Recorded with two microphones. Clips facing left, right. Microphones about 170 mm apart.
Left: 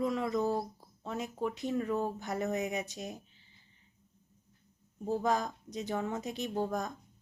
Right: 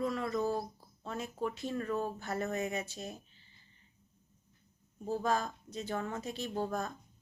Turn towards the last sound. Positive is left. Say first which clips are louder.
# left 2 dB
turn(degrees=15)  # may be behind; listen again after turning